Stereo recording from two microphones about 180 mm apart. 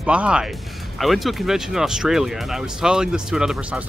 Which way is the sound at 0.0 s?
5° right (ahead or behind).